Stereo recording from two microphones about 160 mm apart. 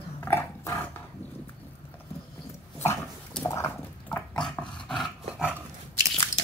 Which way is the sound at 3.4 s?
15° left (ahead or behind).